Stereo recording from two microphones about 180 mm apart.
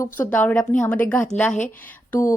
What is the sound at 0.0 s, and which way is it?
A woman's voice, 10° left (ahead or behind).